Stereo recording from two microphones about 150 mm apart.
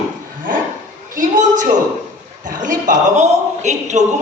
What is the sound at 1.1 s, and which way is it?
A woman's voice, 60° right (ahead or behind).